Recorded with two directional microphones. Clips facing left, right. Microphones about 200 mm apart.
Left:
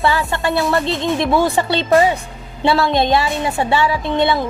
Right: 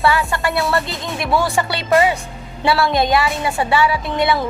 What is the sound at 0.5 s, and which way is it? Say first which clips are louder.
Speech: left 5 dB; centre (ahead or behind).